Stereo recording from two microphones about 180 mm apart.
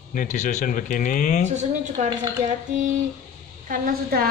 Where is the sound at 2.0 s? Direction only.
40° right (ahead or behind).